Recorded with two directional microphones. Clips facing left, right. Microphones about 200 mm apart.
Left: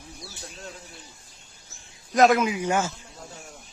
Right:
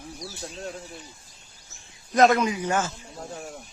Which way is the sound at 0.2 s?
40° right (ahead or behind).